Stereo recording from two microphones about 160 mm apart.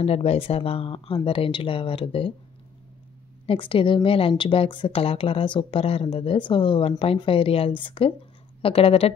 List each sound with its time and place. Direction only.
0.0 s a woman's voice: 40° left (ahead or behind)
3.4 s a woman's voice: 35° left (ahead or behind)